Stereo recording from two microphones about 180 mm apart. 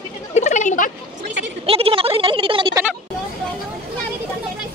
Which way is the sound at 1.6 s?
30° right (ahead or behind).